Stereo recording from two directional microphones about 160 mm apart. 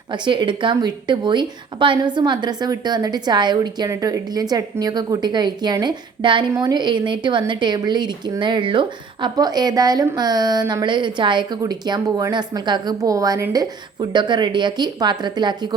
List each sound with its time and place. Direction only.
0.1 s a woman's voice: 30° right (ahead or behind)